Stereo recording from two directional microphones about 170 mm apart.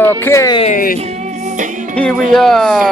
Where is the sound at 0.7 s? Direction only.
55° left (ahead or behind).